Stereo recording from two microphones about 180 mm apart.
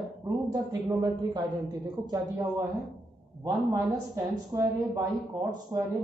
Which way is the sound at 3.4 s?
20° right (ahead or behind).